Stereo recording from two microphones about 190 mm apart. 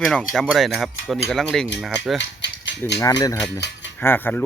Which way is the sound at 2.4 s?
65° left (ahead or behind).